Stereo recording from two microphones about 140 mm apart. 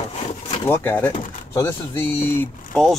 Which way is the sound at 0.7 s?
15° left (ahead or behind).